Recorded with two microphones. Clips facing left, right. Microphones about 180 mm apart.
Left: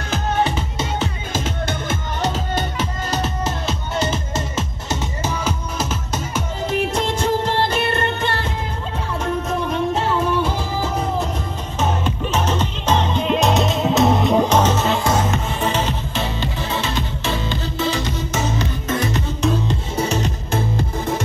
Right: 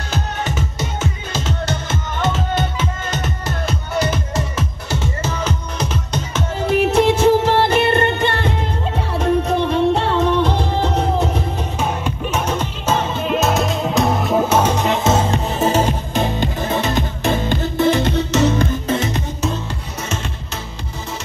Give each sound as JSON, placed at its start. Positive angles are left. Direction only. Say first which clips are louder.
{"t": 1.3, "sound": "music", "louder": "right 1 dB", "side_deg": 50}
{"t": 4.6, "sound": "music", "louder": "even", "side_deg": 20}
{"t": 6.7, "sound": "music", "louder": "right 7 dB", "side_deg": -65}
{"t": 9.6, "sound": "music", "louder": "right 5 dB", "side_deg": -70}
{"t": 10.2, "sound": "music", "louder": "right 3 dB", "side_deg": 10}
{"t": 10.5, "sound": "music", "louder": "right 4 dB", "side_deg": -65}
{"t": 11.8, "sound": "music", "louder": "left 2 dB", "side_deg": -10}
{"t": 18.9, "sound": "music", "louder": "right 2 dB", "side_deg": -25}
{"t": 19.7, "sound": "music", "louder": "left 5 dB", "side_deg": 30}